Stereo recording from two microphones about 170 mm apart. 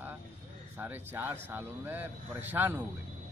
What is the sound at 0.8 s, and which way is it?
Speech, 10° right (ahead or behind).